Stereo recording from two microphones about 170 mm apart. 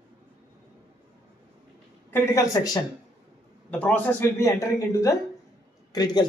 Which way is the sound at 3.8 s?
10° left (ahead or behind).